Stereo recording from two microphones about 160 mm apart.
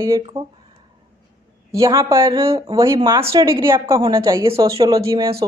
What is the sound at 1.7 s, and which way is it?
A woman's voice, 20° right (ahead or behind).